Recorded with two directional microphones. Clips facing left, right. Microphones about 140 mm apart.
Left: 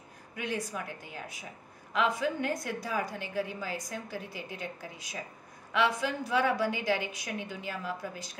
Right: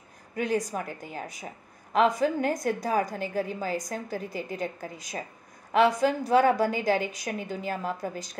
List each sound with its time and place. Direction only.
0.4 s a woman's voice: 40° right (ahead or behind)